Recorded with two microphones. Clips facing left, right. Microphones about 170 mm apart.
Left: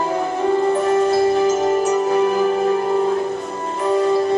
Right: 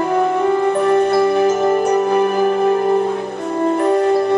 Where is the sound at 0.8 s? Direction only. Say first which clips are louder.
Right 2 dB; 60° right (ahead or behind).